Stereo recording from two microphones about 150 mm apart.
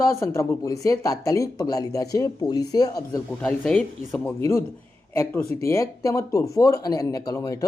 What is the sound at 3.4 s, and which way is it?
Speech, 10° left (ahead or behind).